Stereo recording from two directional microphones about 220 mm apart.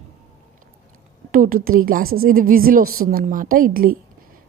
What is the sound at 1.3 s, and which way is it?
A woman's voice, 40° right (ahead or behind).